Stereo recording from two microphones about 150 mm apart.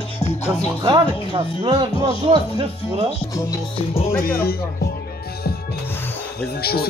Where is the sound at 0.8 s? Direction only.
30° right (ahead or behind).